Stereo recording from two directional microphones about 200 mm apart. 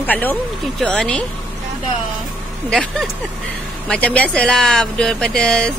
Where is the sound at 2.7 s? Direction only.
Centre (ahead or behind).